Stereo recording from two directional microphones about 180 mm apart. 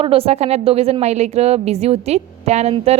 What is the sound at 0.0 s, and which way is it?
A woman's voice, 30° right (ahead or behind).